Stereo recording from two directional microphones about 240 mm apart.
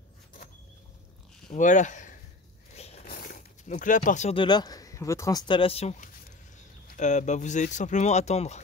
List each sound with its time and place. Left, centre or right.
1.5 s speech: left